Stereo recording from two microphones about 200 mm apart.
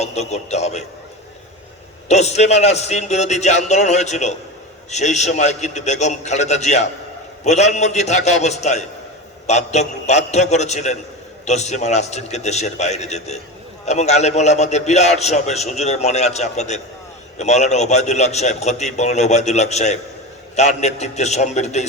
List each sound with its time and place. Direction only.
0.0 s a man's voice: 35° left (ahead or behind)
2.0 s a man's voice: 35° left (ahead or behind)